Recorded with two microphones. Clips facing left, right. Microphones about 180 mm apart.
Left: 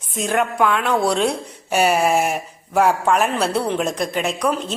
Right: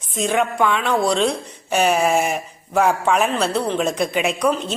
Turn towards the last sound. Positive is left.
turn(degrees=0)  # may be behind; listen again after turning